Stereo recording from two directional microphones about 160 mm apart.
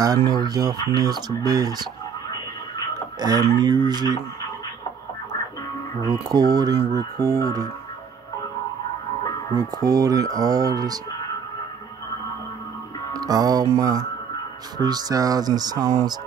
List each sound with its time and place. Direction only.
0.0 s speech: 25° right (ahead or behind)
3.2 s speech: 25° right (ahead or behind)
6.2 s speech: 25° right (ahead or behind)
9.6 s speech: 25° right (ahead or behind)
13.1 s music: 25° right (ahead or behind)
13.7 s speech: 20° right (ahead or behind)